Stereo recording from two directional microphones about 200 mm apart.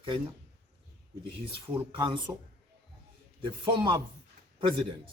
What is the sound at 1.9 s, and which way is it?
Speech, 25° right (ahead or behind).